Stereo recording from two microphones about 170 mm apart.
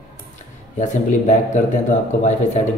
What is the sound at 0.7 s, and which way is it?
Speech, 45° left (ahead or behind).